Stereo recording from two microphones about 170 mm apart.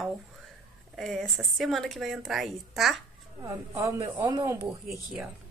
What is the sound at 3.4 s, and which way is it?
Speech, 20° right (ahead or behind).